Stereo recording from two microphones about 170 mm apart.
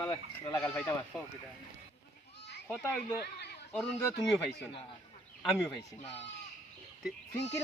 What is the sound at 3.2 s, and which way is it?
Speech, 65° left (ahead or behind).